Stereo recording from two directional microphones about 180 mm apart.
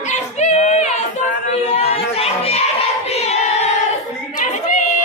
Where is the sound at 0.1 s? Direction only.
40° left (ahead or behind).